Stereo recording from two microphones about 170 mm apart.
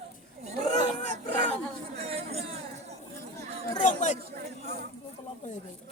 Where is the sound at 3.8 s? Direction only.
45° left (ahead or behind).